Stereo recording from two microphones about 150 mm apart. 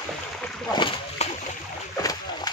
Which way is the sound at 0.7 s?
30° left (ahead or behind).